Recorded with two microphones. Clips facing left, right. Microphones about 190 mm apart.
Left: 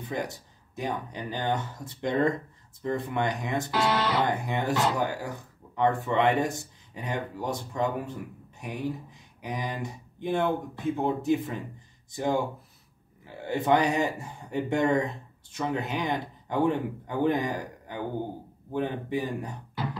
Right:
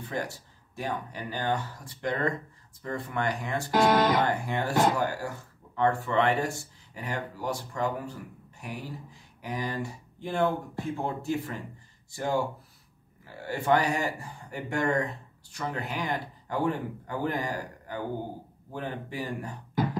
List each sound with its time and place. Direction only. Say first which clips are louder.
0.0 s speech: left 1 dB; 15° left (ahead or behind)
3.7 s speech: right 5 dB; 45° right (ahead or behind)
4.3 s speech: left 1 dB; 20° left (ahead or behind)